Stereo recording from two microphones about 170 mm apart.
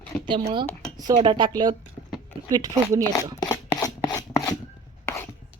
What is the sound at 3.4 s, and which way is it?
Chopping, 20° left (ahead or behind).